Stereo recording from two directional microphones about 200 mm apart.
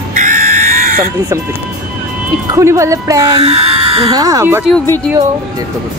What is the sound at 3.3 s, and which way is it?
Speech, 35° right (ahead or behind).